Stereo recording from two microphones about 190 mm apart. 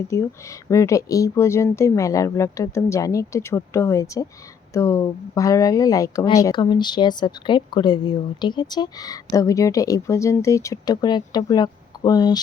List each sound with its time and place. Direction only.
0.1 s speech: 15° left (ahead or behind)